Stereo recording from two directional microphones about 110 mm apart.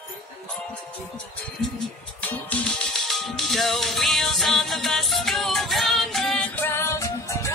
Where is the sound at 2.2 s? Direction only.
10° left (ahead or behind).